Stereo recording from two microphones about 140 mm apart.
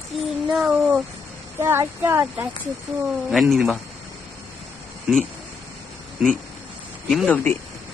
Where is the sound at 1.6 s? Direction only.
15° right (ahead or behind).